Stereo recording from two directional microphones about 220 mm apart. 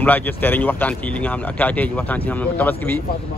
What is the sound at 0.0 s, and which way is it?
Speech, 10° left (ahead or behind).